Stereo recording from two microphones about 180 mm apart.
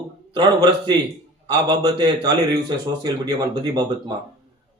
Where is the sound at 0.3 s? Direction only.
25° right (ahead or behind).